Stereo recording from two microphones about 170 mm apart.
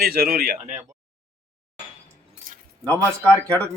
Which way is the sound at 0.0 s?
65° right (ahead or behind).